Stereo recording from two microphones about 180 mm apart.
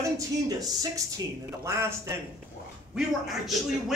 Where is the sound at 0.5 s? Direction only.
20° right (ahead or behind).